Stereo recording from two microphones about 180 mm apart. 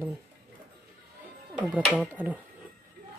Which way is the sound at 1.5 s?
5° right (ahead or behind).